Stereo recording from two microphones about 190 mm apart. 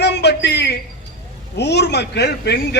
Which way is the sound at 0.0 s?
65° left (ahead or behind).